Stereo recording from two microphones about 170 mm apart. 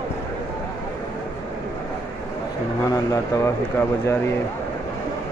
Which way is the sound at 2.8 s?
20° left (ahead or behind).